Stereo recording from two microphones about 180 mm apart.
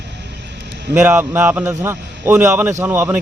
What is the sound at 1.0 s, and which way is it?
A man's voice, 10° right (ahead or behind).